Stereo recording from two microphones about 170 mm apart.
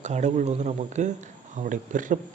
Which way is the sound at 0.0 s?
45° right (ahead or behind).